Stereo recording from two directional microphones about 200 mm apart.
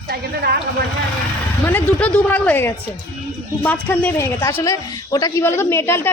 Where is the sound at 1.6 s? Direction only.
10° left (ahead or behind).